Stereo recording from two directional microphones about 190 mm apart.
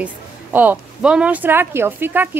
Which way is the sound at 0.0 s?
10° right (ahead or behind).